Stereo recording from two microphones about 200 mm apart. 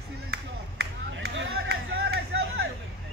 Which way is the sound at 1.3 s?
60° right (ahead or behind).